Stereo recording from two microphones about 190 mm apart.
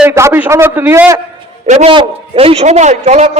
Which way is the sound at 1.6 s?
35° right (ahead or behind).